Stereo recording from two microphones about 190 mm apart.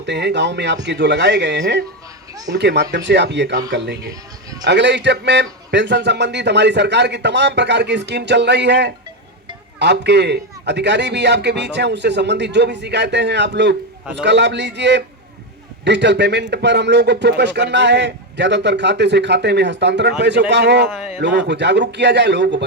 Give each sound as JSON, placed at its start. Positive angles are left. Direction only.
{"t": 0.0, "sound": "a man's voice", "side_deg": -65}